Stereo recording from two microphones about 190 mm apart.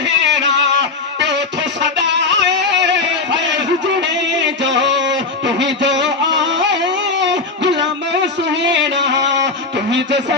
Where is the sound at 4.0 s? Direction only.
70° right (ahead or behind).